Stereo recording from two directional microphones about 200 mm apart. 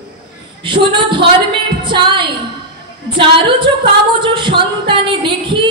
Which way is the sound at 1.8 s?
25° right (ahead or behind).